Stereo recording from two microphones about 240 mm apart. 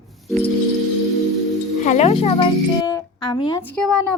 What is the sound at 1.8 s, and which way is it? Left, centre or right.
Speech, left.